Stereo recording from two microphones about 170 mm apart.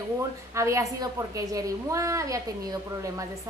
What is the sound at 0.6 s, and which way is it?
A woman's voice, 20° right (ahead or behind).